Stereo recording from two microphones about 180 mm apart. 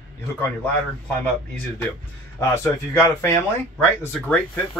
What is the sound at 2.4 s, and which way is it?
Speech, 15° left (ahead or behind).